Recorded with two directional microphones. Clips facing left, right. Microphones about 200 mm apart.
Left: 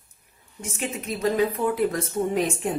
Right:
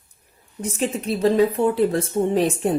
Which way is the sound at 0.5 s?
35° right (ahead or behind).